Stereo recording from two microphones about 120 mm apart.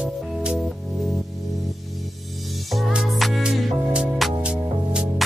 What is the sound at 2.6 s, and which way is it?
Music, centre (ahead or behind).